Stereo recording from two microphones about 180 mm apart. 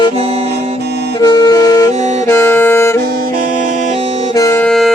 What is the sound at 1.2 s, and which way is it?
Music, 20° left (ahead or behind).